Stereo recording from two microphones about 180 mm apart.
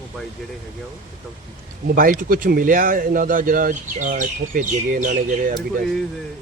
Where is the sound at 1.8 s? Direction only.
50° right (ahead or behind).